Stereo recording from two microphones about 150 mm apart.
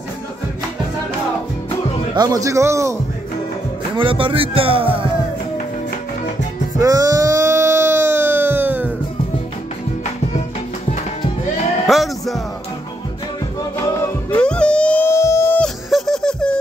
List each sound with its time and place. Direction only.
2.1 s a man's voice: 25° right (ahead or behind)
3.9 s speech: 35° right (ahead or behind)
6.8 s a sound: 20° right (ahead or behind)
11.9 s music: centre (ahead or behind)
13.7 s music: 15° left (ahead or behind)
14.4 s howl: 5° left (ahead or behind)
15.6 s a sound: 5° left (ahead or behind)